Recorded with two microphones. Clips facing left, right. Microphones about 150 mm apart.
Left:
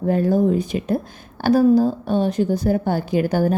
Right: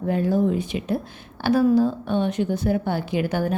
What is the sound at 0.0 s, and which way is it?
A woman's voice, 40° left (ahead or behind).